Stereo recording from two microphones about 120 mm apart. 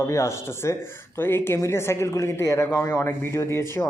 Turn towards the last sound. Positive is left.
turn(degrees=20)  # may be behind; listen again after turning